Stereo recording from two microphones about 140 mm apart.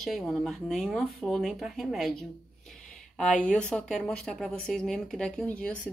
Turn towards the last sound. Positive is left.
turn(degrees=10)  # may be behind; listen again after turning